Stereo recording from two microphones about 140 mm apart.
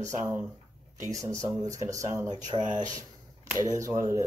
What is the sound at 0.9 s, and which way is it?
Speech, 60° right (ahead or behind).